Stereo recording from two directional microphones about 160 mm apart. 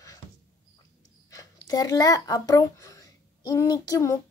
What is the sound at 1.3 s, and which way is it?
A woman's voice, 20° left (ahead or behind).